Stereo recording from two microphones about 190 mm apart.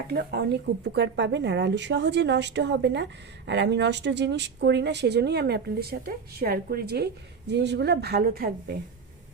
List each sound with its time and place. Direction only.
0.1 s speech: 60° right (ahead or behind)